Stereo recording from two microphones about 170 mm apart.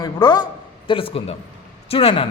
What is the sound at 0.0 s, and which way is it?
A man's voice, 25° left (ahead or behind).